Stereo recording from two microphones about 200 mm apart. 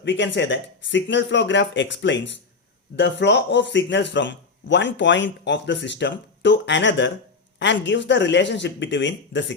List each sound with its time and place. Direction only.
0.0 s speech: 65° left (ahead or behind)